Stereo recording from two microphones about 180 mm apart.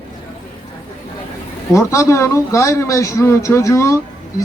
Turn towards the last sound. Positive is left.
turn(degrees=15)  # may be behind; listen again after turning